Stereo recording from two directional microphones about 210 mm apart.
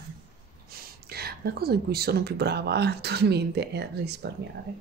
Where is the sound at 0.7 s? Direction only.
45° right (ahead or behind).